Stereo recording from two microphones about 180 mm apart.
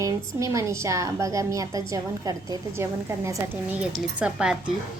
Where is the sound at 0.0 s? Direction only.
15° right (ahead or behind).